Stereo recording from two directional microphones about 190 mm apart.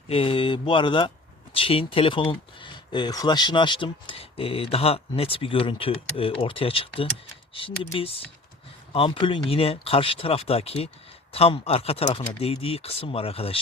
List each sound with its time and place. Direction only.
0.1 s speech: 30° left (ahead or behind)